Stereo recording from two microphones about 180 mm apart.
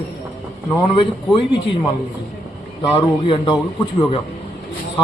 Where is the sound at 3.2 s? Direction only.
30° left (ahead or behind).